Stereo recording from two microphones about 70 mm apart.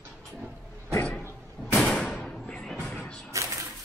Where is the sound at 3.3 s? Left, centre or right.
Right.